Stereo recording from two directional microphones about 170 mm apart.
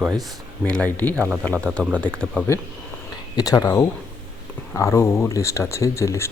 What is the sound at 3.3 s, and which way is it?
Speech, 20° left (ahead or behind).